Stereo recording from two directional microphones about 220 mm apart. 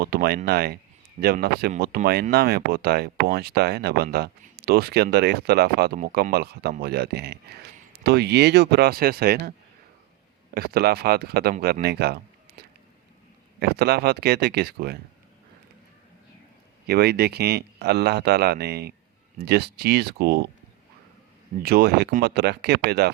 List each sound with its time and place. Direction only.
0.0 s speech: 45° right (ahead or behind)
10.5 s speech: 45° right (ahead or behind)
16.8 s speech: 45° right (ahead or behind)
21.6 s speech: 45° right (ahead or behind)